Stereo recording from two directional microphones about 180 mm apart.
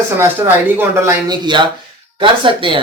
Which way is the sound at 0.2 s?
15° right (ahead or behind).